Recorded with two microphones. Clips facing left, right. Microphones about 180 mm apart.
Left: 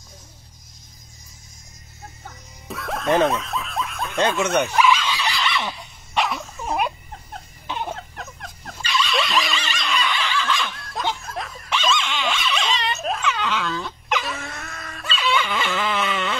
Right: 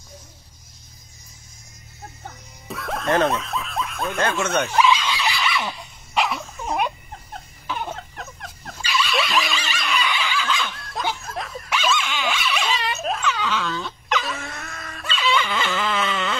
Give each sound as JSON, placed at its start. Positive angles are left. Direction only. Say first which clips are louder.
{"t": 2.7, "sound": "music", "louder": "even", "side_deg": 0}
{"t": 3.3, "sound": "snicker", "louder": "even", "side_deg": 0}
{"t": 4.6, "sound": "a sound", "louder": "even", "side_deg": -15}
{"t": 5.3, "sound": "dog", "louder": "even", "side_deg": -5}
{"t": 7.6, "sound": "a sound", "louder": "even", "side_deg": 20}
{"t": 7.9, "sound": "dog", "louder": "left 1 dB", "side_deg": 0}